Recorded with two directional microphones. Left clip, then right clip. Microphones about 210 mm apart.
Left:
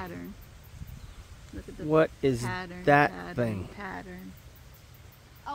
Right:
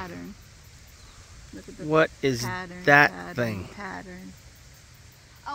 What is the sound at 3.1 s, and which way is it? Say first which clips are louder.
Speech: right 3 dB; 40° right (ahead or behind).